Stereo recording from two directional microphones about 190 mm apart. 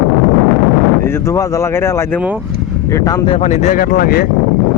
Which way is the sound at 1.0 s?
10° left (ahead or behind).